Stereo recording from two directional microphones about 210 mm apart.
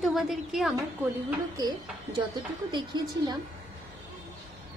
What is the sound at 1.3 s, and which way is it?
A woman's voice, 15° right (ahead or behind).